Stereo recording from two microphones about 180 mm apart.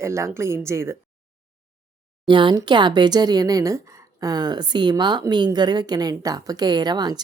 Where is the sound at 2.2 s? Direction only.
25° right (ahead or behind).